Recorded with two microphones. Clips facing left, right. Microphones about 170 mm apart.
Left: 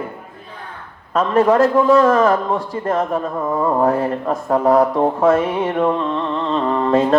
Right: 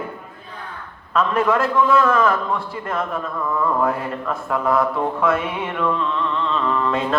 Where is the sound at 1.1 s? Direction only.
35° left (ahead or behind).